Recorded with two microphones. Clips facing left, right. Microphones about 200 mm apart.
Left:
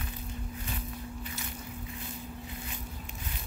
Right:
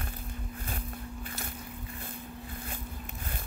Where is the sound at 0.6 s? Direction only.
50° right (ahead or behind).